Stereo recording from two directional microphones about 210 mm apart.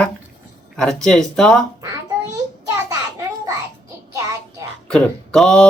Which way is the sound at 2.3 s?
15° right (ahead or behind).